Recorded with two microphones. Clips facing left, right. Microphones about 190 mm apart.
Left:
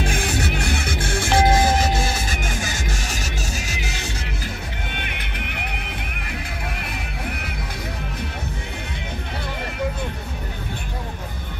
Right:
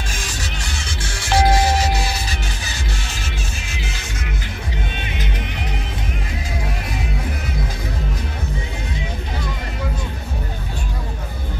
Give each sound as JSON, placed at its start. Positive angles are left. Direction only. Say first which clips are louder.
{"t": 0.0, "sound": "music", "louder": "left 7 dB", "side_deg": 60}
{"t": 4.9, "sound": "music", "louder": "right 3 dB", "side_deg": 60}